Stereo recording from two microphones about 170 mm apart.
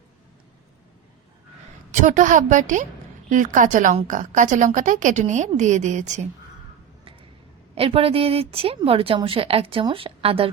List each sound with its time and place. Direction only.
1.9 s a woman's voice: 45° right (ahead or behind)
7.8 s a woman's voice: 35° right (ahead or behind)